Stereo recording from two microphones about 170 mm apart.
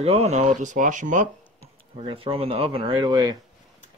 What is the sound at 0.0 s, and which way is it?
Speech, 40° right (ahead or behind).